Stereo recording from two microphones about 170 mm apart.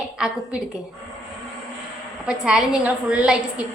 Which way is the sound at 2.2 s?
5° right (ahead or behind).